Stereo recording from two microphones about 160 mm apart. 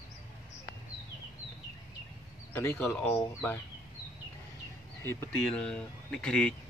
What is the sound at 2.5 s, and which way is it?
Speech, 15° left (ahead or behind).